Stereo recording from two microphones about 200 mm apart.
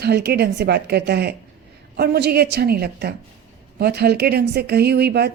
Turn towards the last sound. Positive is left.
turn(degrees=-55)  # may be behind; listen again after turning